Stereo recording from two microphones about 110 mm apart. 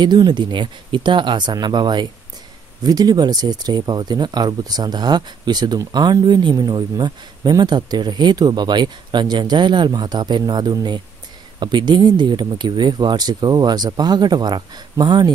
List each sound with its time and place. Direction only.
0.0 s speech: 40° right (ahead or behind)